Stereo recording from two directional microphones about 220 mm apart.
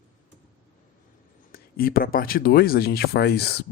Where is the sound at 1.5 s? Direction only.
40° left (ahead or behind).